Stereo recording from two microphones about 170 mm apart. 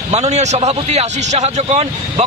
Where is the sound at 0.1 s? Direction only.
40° right (ahead or behind).